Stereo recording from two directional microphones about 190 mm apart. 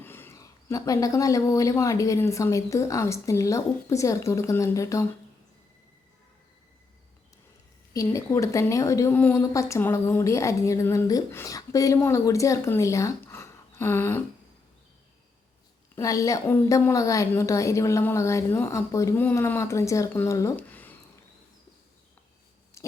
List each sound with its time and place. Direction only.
0.0 s a woman's voice: 10° left (ahead or behind)
7.9 s a woman's voice: 15° left (ahead or behind)
16.0 s a woman's voice: 15° left (ahead or behind)
22.8 s owl: 15° left (ahead or behind)